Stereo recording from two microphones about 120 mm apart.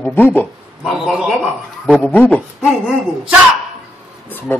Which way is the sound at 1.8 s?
10° left (ahead or behind).